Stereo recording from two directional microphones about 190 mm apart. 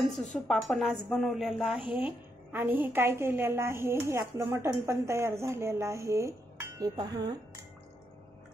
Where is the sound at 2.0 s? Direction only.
10° right (ahead or behind).